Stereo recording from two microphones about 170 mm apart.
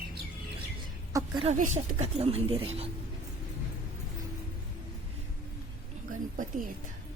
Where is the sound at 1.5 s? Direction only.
45° right (ahead or behind).